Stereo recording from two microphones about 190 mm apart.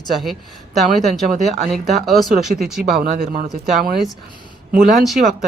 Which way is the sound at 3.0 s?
50° right (ahead or behind).